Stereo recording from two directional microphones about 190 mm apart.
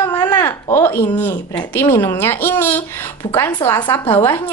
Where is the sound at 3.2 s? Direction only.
25° left (ahead or behind).